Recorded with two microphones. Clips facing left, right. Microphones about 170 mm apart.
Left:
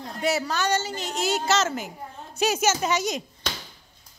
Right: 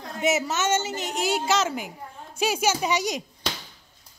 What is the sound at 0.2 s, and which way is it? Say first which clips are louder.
A woman's voice: right 1 dB; 20° right (ahead or behind).